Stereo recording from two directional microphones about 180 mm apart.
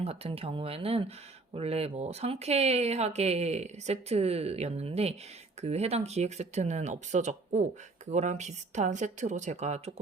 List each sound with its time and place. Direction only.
0.0 s speech: 35° right (ahead or behind)